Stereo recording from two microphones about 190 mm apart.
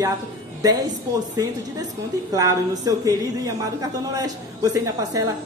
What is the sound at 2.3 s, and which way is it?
A man's voice, 20° right (ahead or behind).